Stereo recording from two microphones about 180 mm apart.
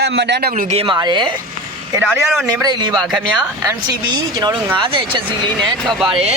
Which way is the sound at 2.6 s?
20° right (ahead or behind).